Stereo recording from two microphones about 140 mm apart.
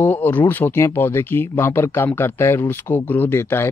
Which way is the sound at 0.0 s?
15° left (ahead or behind).